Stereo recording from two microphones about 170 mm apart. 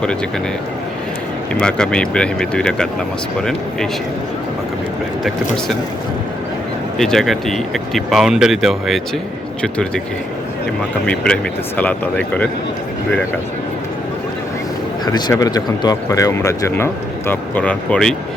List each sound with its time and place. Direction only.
1.5 s speech: 5° left (ahead or behind)
7.0 s speech: centre (ahead or behind)
11.0 s speech: 5° left (ahead or behind)
15.0 s speech: 20° left (ahead or behind); by 18.1 s 5° left (ahead or behind)